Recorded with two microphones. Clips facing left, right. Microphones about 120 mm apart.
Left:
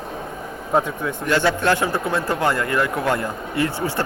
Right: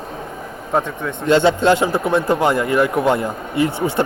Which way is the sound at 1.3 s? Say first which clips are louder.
Right 6 dB; 20° right (ahead or behind).